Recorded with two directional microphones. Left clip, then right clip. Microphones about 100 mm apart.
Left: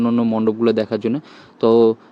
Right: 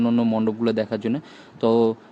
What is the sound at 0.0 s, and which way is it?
Speech, 15° left (ahead or behind).